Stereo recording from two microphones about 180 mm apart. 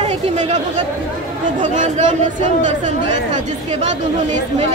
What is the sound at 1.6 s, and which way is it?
Speech, 45° right (ahead or behind).